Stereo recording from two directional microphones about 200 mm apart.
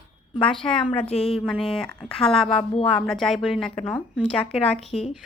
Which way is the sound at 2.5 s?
25° left (ahead or behind).